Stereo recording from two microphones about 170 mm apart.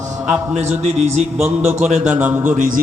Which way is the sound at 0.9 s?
40° right (ahead or behind).